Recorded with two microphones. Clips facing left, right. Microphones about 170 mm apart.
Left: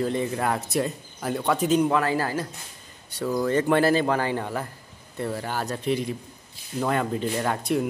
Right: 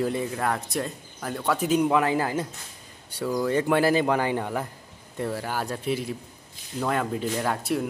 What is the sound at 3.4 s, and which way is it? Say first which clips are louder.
Speech: left 1 dB; 5° right (ahead or behind).